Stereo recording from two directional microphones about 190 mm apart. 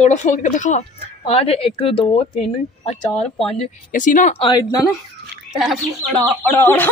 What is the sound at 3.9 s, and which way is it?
Speech, 40° left (ahead or behind).